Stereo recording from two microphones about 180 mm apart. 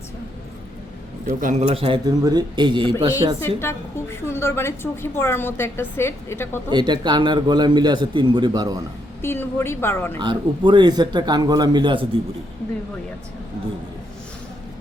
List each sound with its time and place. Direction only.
1.3 s a man's voice: 45° right (ahead or behind); by 2.9 s 25° right (ahead or behind)
3.6 s a woman's voice: 15° left (ahead or behind)
6.7 s a man's voice: 25° right (ahead or behind)
9.2 s a woman's voice: 15° left (ahead or behind)
10.2 s a man's voice: 25° right (ahead or behind)